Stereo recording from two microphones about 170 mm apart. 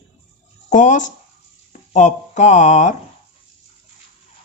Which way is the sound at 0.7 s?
45° left (ahead or behind).